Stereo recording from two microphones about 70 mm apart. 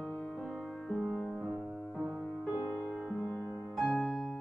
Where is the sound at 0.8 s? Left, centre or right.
Centre.